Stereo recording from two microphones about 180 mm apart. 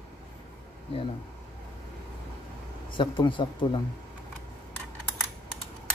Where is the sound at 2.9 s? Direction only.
25° left (ahead or behind).